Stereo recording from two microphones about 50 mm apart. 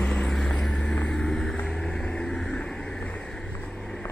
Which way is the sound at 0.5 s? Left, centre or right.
Centre.